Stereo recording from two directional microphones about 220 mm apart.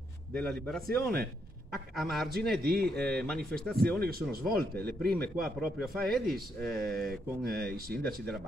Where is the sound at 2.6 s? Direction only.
45° right (ahead or behind).